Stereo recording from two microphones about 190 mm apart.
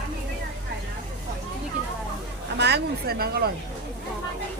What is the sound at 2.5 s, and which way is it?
Speech, 60° right (ahead or behind).